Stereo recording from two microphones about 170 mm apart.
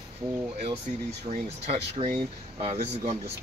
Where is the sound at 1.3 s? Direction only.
40° right (ahead or behind).